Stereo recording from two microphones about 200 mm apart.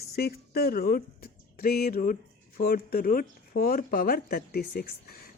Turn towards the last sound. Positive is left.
turn(degrees=50)  # may be behind; listen again after turning